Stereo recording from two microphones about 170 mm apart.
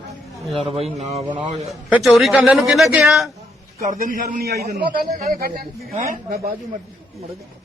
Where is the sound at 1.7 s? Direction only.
Centre (ahead or behind).